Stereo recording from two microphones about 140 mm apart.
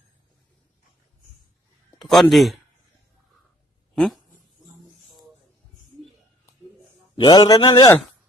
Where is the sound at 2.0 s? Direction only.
Centre (ahead or behind).